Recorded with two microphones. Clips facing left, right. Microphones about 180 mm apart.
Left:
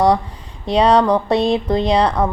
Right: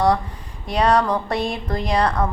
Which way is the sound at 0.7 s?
20° left (ahead or behind).